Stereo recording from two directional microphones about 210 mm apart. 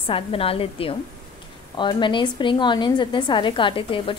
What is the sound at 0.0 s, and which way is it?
A woman's voice, 25° left (ahead or behind).